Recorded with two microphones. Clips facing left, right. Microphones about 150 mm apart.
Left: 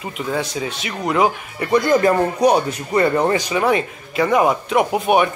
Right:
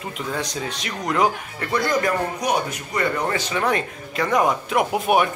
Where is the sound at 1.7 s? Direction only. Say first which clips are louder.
Left 7 dB; 25° left (ahead or behind).